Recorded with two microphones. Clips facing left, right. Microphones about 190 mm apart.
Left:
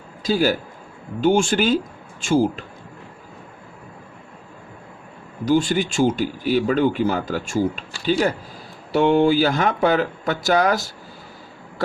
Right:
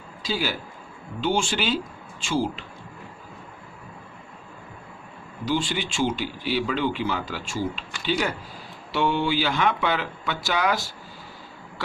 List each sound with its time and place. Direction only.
0.2 s a man's voice: 45° left (ahead or behind)
5.5 s speech: 45° left (ahead or behind)
7.9 s speech: 30° left (ahead or behind)
9.0 s speech: 45° left (ahead or behind)